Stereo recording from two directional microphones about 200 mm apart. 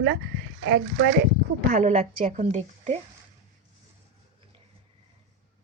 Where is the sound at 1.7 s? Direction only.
35° right (ahead or behind).